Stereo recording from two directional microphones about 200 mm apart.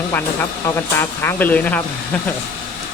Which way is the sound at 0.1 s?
10° left (ahead or behind).